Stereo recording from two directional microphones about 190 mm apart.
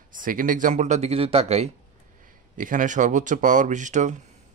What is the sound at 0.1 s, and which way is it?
Speech, 45° right (ahead or behind).